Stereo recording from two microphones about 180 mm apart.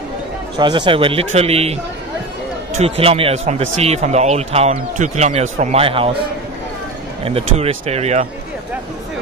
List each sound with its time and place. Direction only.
0.6 s speech: 25° right (ahead or behind)
7.2 s speech: 35° right (ahead or behind)